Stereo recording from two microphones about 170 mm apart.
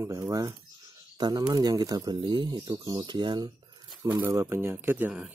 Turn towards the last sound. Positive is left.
turn(degrees=-10)  # may be behind; listen again after turning